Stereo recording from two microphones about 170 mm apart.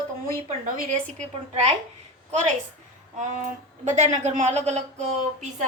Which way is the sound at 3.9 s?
45° right (ahead or behind).